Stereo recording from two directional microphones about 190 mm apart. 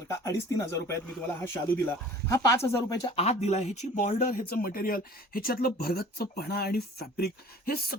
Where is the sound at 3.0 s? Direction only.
35° left (ahead or behind).